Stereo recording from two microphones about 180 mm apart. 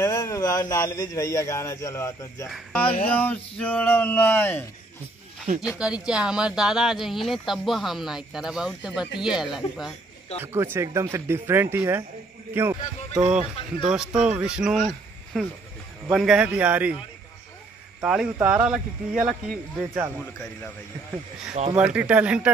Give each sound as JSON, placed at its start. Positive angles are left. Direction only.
{"t": 0.0, "sound": "speech", "side_deg": 15}
{"t": 2.9, "sound": "speech", "side_deg": 30}
{"t": 3.2, "sound": "speech", "side_deg": 10}
{"t": 5.8, "sound": "speech", "side_deg": -5}
{"t": 10.4, "sound": "speech", "side_deg": -15}
{"t": 18.0, "sound": "speech", "side_deg": -5}
{"t": 21.6, "sound": "speech", "side_deg": -40}
{"t": 21.9, "sound": "speech", "side_deg": -5}